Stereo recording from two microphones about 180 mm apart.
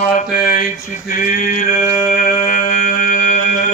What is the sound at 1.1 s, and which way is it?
Mantra, 50° left (ahead or behind).